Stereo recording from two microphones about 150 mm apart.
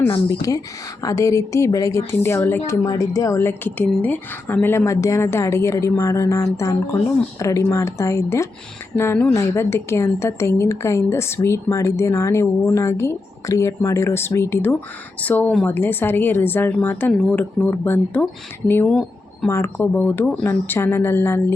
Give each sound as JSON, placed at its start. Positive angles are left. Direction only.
{"t": 0.3, "sound": "a woman's voice", "side_deg": 20}